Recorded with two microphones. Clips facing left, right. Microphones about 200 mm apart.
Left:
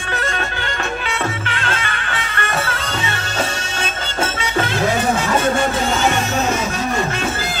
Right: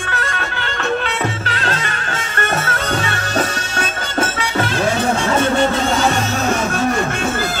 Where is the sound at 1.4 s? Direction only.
35° right (ahead or behind).